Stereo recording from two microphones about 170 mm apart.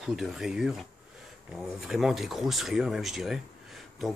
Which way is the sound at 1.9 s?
Centre (ahead or behind).